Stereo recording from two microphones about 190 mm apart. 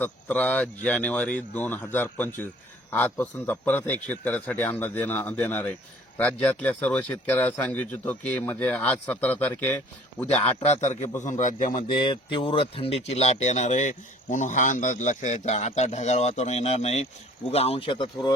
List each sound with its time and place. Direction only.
0.0 s speech: 10° left (ahead or behind)
10.6 s speech: 35° left (ahead or behind)
11.9 s speech: 25° left (ahead or behind)